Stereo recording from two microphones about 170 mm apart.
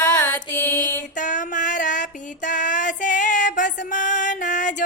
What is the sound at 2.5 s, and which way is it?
Music, 50° left (ahead or behind).